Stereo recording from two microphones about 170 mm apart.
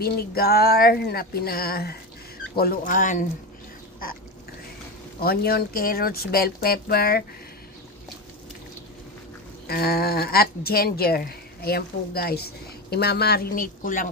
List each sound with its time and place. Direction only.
0.0 s speech: 65° left (ahead or behind)
5.2 s speech: 65° left (ahead or behind)
9.7 s speech: 65° left (ahead or behind)